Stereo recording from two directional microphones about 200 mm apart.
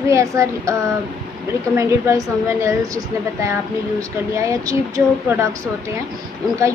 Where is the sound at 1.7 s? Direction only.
15° right (ahead or behind).